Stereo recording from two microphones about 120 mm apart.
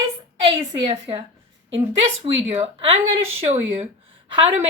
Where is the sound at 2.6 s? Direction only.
50° right (ahead or behind).